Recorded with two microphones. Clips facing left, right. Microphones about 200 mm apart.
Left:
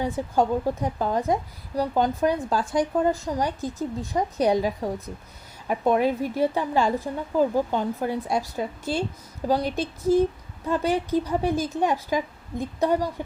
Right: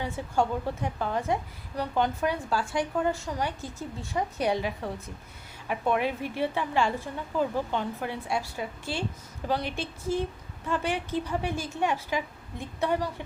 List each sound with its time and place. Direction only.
0.0 s a woman's voice: 40° left (ahead or behind)